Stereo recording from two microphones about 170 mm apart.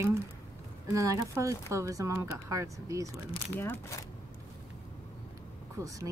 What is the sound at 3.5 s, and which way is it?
Speech, 10° left (ahead or behind).